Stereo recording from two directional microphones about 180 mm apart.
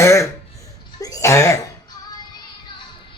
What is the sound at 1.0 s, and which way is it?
Cough, 20° left (ahead or behind).